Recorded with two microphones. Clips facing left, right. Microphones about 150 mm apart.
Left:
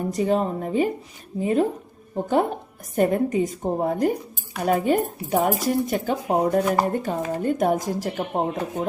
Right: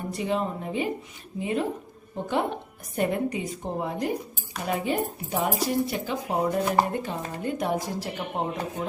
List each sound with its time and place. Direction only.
0.1 s speech: 40° left (ahead or behind)